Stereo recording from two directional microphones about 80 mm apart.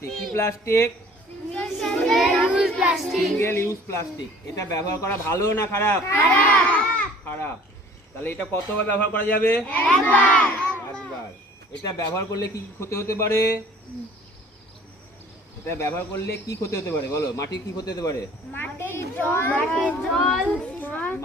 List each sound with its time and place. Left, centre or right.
0.3 s speech: left
1.6 s child singing: centre
2.8 s speech: centre
3.3 s speech: left
6.5 s a sound: centre
8.2 s speech: left
11.8 s a man's voice: left
12.8 s speech: left
15.6 s speech: left
18.5 s a child's voice: left
20.1 s speech: centre
20.7 s child singing: left